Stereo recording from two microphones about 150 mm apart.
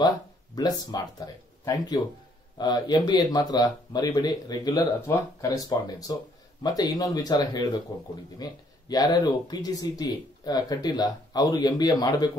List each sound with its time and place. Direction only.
0.6 s speech: 25° left (ahead or behind)